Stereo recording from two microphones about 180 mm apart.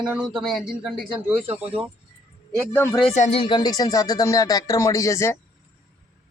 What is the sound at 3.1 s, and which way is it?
Speech, 40° left (ahead or behind).